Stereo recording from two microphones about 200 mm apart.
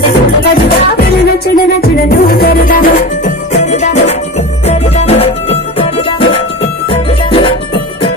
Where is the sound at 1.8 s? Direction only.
50° left (ahead or behind).